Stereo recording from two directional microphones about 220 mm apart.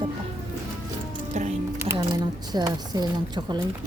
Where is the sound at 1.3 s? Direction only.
35° right (ahead or behind).